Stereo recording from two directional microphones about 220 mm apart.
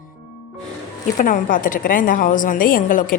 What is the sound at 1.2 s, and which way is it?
A woman's voice, 40° left (ahead or behind).